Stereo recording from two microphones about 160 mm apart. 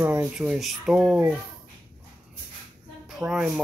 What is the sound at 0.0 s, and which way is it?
Speech, 5° right (ahead or behind).